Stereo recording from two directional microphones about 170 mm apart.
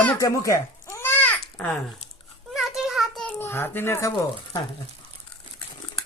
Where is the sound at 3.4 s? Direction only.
15° left (ahead or behind).